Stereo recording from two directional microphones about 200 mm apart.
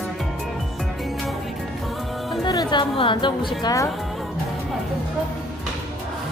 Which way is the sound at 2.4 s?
20° left (ahead or behind).